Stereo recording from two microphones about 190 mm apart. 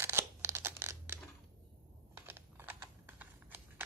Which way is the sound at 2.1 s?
10° right (ahead or behind).